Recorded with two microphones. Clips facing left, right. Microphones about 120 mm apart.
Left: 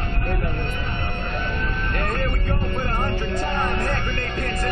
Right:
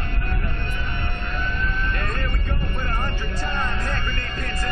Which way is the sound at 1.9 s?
60° left (ahead or behind).